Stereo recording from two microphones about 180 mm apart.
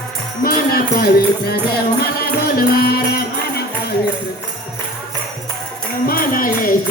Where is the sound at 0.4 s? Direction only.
55° left (ahead or behind).